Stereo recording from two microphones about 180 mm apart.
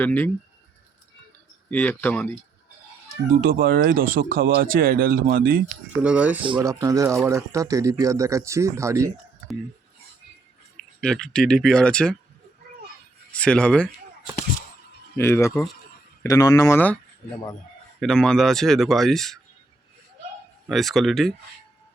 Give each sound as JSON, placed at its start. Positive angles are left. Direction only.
{"t": 0.0, "sound": "speech", "side_deg": 10}
{"t": 1.7, "sound": "speech", "side_deg": 10}
{"t": 3.4, "sound": "speech", "side_deg": -55}
{"t": 6.0, "sound": "speech", "side_deg": -5}
{"t": 6.4, "sound": "speech", "side_deg": -25}
{"t": 10.8, "sound": "speech", "side_deg": 5}
{"t": 13.3, "sound": "speech", "side_deg": 5}
{"t": 15.2, "sound": "speech", "side_deg": 15}
{"t": 18.0, "sound": "speech", "side_deg": 5}
{"t": 20.7, "sound": "speech", "side_deg": 0}